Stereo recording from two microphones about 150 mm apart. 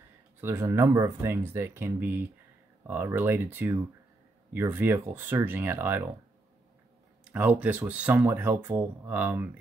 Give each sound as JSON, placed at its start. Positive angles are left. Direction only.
{"t": 0.4, "sound": "speech", "side_deg": -15}
{"t": 7.2, "sound": "speech", "side_deg": -10}